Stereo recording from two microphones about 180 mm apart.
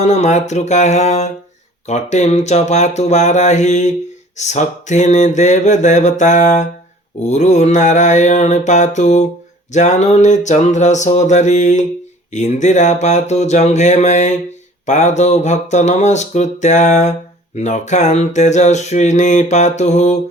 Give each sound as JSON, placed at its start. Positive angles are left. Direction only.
{"t": 0.0, "sound": "speech", "side_deg": 40}